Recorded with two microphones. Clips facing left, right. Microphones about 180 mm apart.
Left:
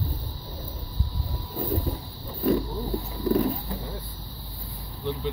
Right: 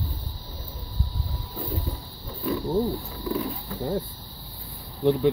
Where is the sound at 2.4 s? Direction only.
45° left (ahead or behind).